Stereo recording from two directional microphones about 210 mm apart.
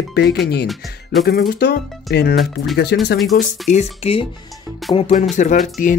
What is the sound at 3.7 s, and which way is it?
Speech, 30° left (ahead or behind).